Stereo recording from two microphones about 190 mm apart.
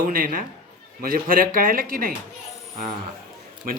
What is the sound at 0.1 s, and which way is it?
Speech, 50° right (ahead or behind).